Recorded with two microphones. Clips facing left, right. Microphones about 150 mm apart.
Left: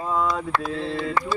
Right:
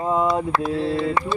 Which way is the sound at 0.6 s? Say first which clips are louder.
Right 5 dB; 5° right (ahead or behind).